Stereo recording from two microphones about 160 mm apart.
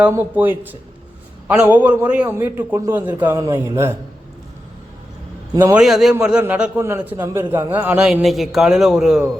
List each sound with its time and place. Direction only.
0.0 s a man's voice: 10° right (ahead or behind)
5.5 s a man's voice: 10° right (ahead or behind)